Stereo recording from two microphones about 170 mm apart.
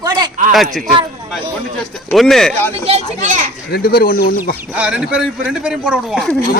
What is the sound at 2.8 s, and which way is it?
Speech, 40° right (ahead or behind).